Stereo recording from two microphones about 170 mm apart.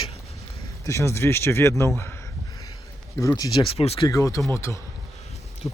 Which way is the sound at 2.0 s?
15° left (ahead or behind).